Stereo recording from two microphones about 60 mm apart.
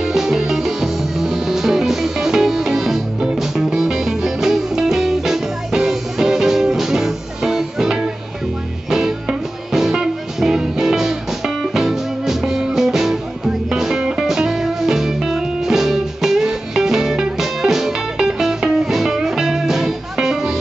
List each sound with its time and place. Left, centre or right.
0.0 s music: centre